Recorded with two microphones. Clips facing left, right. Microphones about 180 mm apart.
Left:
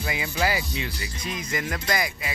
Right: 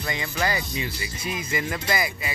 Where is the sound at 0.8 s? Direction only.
5° right (ahead or behind).